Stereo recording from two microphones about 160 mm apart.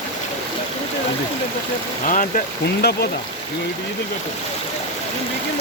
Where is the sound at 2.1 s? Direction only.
55° left (ahead or behind).